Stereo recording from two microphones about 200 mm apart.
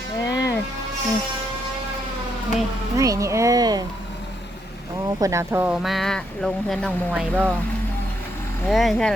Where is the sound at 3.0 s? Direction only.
15° right (ahead or behind).